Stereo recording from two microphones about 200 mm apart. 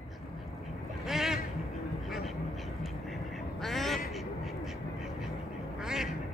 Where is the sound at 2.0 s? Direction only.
Centre (ahead or behind).